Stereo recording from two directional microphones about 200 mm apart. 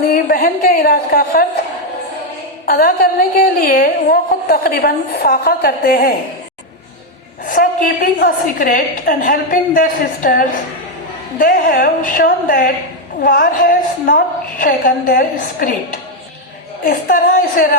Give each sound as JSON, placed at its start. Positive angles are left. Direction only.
{"t": 0.1, "sound": "a woman's voice", "side_deg": 45}
{"t": 2.6, "sound": "a woman's voice", "side_deg": 50}
{"t": 7.4, "sound": "a woman's voice", "side_deg": 45}